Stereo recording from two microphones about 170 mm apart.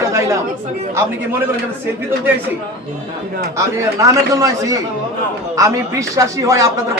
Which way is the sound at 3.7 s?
20° right (ahead or behind).